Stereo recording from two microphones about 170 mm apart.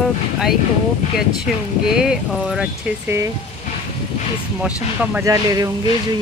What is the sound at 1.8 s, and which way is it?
Speech, 5° right (ahead or behind).